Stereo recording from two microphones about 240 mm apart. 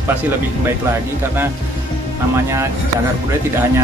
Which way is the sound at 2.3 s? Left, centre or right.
Centre.